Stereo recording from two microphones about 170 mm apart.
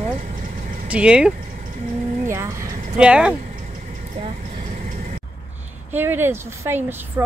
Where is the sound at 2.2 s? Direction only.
15° right (ahead or behind).